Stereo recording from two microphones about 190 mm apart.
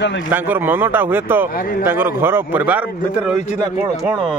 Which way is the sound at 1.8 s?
10° right (ahead or behind).